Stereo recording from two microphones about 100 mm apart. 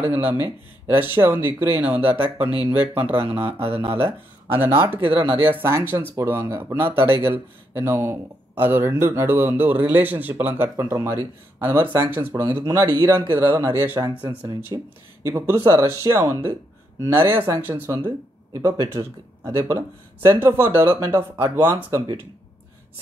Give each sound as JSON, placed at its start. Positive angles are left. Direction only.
{"t": 0.0, "sound": "speech", "side_deg": -20}
{"t": 3.4, "sound": "speech", "side_deg": -70}
{"t": 3.9, "sound": "speech", "side_deg": -20}
{"t": 14.4, "sound": "speech", "side_deg": -40}
{"t": 15.2, "sound": "speech", "side_deg": -30}